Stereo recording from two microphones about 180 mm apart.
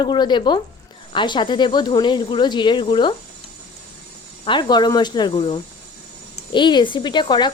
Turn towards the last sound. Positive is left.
turn(degrees=25)  # may be behind; listen again after turning